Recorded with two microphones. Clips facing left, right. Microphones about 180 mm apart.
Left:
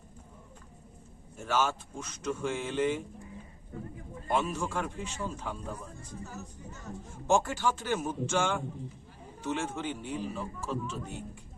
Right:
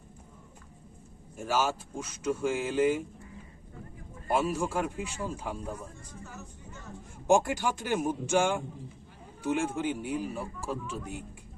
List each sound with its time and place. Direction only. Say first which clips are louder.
1.4 s a man's voice: right 1 dB; 10° right (ahead or behind)
4.3 s a man's voice: right 2 dB; 10° right (ahead or behind)
6.2 s speech: left 2 dB; 40° left (ahead or behind)
7.3 s a man's voice: right 2 dB; 15° right (ahead or behind)